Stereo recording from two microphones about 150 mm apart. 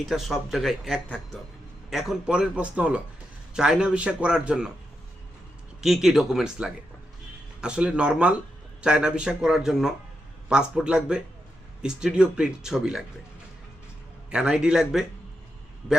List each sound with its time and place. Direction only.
0.1 s speech: centre (ahead or behind)
1.0 s speech: 10° left (ahead or behind)
1.9 s a man's voice: centre (ahead or behind)
5.8 s a man's voice: centre (ahead or behind)
14.3 s speech: 5° right (ahead or behind)